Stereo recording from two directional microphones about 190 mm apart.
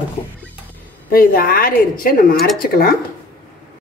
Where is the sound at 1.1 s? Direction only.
50° left (ahead or behind).